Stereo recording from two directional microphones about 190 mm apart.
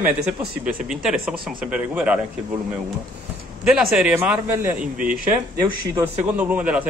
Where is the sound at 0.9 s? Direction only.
5° right (ahead or behind).